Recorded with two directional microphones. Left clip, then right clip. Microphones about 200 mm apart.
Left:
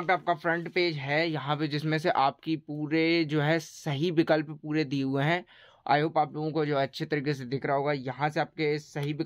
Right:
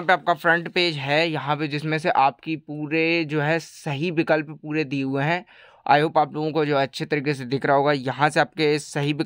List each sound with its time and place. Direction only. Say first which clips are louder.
0.0 s speech: right 7 dB; 40° right (ahead or behind); by 5.4 s 15° right (ahead or behind)
5.9 s speech: right 7 dB; 30° right (ahead or behind); by 9.2 s 45° right (ahead or behind)